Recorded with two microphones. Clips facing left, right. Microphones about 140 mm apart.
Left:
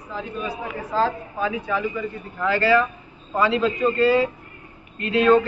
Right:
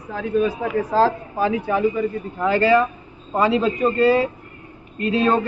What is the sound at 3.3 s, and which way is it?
Speech, 30° right (ahead or behind).